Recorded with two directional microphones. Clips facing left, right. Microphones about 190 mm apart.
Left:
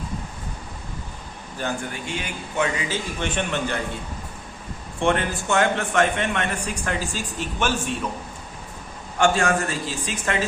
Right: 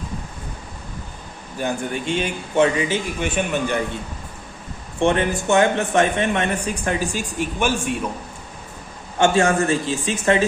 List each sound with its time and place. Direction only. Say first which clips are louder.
1.5 s a man's voice: right 4 dB; 20° right (ahead or behind)
3.2 s a man's voice: right 1 dB; 10° right (ahead or behind)
4.9 s a man's voice: right 4 dB; 20° right (ahead or behind)
9.1 s a man's voice: right 3 dB; 25° right (ahead or behind)